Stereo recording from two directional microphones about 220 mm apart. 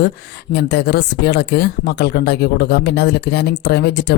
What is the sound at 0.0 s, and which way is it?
Speech, 50° left (ahead or behind).